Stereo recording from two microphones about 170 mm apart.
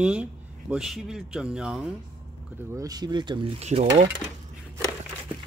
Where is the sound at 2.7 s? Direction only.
20° right (ahead or behind); by 3.8 s 35° right (ahead or behind).